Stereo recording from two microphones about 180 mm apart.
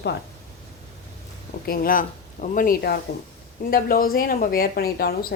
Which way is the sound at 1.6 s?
55° left (ahead or behind).